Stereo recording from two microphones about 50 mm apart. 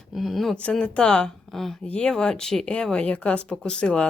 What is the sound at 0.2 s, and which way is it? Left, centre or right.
Speech, centre.